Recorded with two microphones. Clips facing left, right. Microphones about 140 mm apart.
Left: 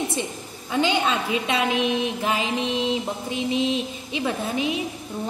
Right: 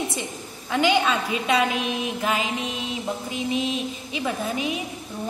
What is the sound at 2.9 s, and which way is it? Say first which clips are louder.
A woman's voice: left 3 dB; 25° left (ahead or behind).